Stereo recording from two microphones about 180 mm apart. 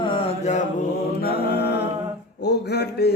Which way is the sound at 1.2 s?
60° left (ahead or behind).